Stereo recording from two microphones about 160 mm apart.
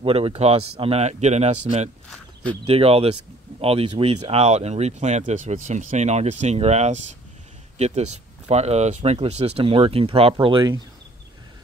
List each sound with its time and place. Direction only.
0.0 s speech: 40° right (ahead or behind)